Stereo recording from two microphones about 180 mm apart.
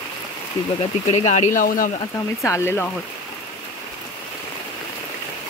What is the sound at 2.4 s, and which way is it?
Speech, 15° left (ahead or behind).